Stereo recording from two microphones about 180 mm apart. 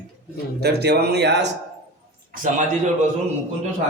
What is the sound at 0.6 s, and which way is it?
Speech, 65° right (ahead or behind).